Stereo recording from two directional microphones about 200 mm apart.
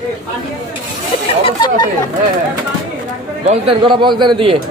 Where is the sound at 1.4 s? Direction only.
20° left (ahead or behind).